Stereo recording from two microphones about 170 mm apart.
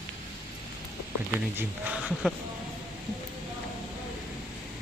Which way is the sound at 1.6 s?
10° right (ahead or behind).